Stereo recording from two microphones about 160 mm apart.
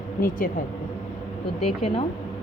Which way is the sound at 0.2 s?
60° left (ahead or behind).